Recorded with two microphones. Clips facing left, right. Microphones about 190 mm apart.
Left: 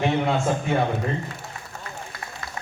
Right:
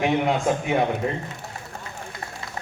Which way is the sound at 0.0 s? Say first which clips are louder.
Right 1 dB; 15° right (ahead or behind).